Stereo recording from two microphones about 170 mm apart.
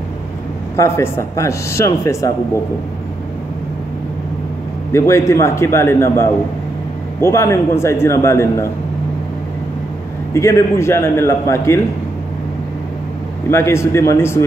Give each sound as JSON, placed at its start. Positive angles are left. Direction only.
{"t": 0.7, "sound": "speech", "side_deg": 15}
{"t": 4.9, "sound": "speech", "side_deg": 15}
{"t": 10.3, "sound": "speech", "side_deg": 15}
{"t": 13.5, "sound": "speech", "side_deg": 15}